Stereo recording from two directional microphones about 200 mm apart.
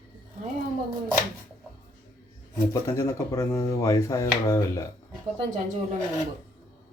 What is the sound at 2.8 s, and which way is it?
Speech, 15° left (ahead or behind).